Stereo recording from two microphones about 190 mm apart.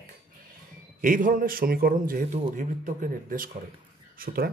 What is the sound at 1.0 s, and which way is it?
A man's voice, 45° right (ahead or behind).